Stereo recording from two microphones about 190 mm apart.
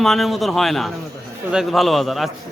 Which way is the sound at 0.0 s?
Centre (ahead or behind).